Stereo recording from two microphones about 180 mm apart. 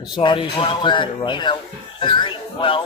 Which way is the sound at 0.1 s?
25° left (ahead or behind).